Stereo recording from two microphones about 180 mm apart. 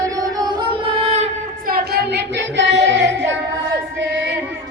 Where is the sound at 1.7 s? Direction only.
65° right (ahead or behind); by 3.3 s 85° right.